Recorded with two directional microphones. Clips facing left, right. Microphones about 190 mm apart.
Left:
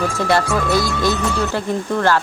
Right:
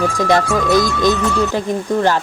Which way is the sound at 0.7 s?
15° right (ahead or behind).